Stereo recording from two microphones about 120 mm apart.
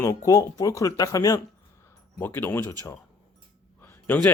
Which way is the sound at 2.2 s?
15° left (ahead or behind).